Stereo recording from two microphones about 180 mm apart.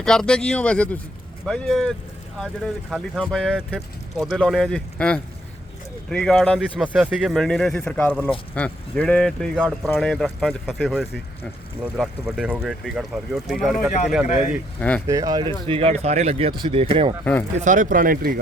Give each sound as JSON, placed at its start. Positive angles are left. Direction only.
{"t": 0.0, "sound": "speech", "side_deg": 5}
{"t": 2.9, "sound": "speech", "side_deg": 0}
{"t": 15.0, "sound": "speech", "side_deg": -20}
{"t": 17.6, "sound": "speech", "side_deg": -45}